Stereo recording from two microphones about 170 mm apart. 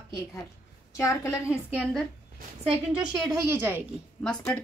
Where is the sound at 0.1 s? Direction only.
20° left (ahead or behind).